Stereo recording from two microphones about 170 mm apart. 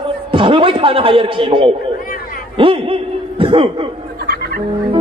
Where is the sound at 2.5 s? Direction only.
30° right (ahead or behind).